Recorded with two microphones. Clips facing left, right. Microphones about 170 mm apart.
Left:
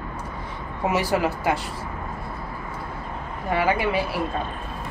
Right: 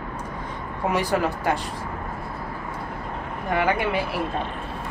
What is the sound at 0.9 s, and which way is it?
Speech, 10° left (ahead or behind).